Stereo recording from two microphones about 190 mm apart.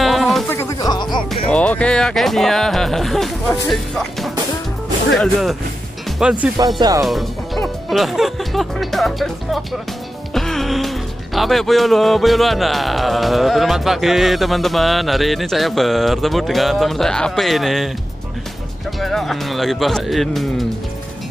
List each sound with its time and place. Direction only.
0.0 s music: centre (ahead or behind)
0.5 s music: 15° left (ahead or behind)
1.3 s speech: 5° left (ahead or behind)
6.8 s speech: 20° right (ahead or behind)
7.1 s speech: centre (ahead or behind)
18.9 s speech: centre (ahead or behind)